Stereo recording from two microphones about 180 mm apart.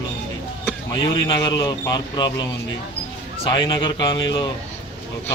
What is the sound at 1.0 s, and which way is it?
A man's voice, 25° left (ahead or behind).